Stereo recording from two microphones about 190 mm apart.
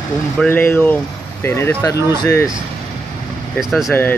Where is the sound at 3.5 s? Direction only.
Centre (ahead or behind).